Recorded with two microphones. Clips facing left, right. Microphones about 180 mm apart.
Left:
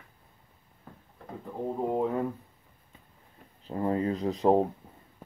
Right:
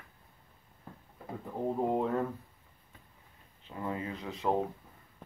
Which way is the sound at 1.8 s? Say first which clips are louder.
Left 4 dB; centre (ahead or behind).